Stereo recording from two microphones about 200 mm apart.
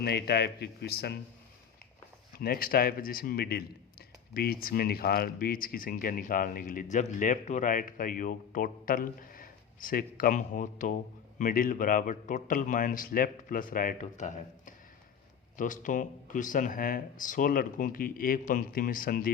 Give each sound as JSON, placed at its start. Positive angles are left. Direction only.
{"t": 0.0, "sound": "speech", "side_deg": 55}
{"t": 2.4, "sound": "speech", "side_deg": 50}